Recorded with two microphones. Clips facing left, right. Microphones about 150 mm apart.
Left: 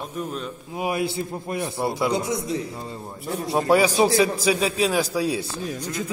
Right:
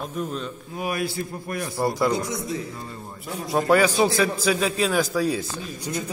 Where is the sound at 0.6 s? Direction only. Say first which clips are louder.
Left 3 dB; 20° left (ahead or behind).